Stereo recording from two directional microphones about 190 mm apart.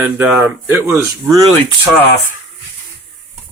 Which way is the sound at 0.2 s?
10° right (ahead or behind).